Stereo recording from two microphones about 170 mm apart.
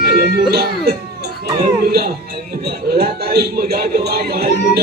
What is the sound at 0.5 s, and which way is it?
Speech, 65° right (ahead or behind).